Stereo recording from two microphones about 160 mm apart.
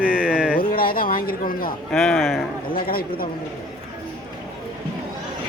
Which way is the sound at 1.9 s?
5° left (ahead or behind).